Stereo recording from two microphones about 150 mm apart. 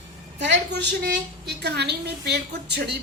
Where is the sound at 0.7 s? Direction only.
90° right.